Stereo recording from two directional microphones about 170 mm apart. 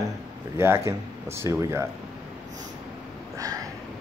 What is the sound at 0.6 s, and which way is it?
Speech, 15° right (ahead or behind).